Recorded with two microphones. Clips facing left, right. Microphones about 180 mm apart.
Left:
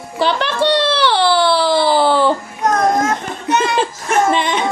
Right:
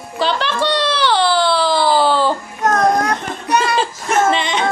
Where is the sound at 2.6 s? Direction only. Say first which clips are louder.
Even; 20° left (ahead or behind).